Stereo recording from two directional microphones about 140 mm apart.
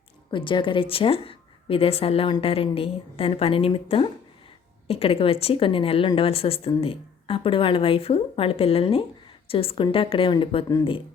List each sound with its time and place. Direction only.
0.3 s a woman's voice: 35° left (ahead or behind)